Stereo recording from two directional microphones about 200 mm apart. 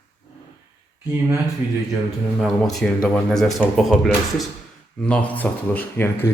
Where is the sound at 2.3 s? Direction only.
Centre (ahead or behind).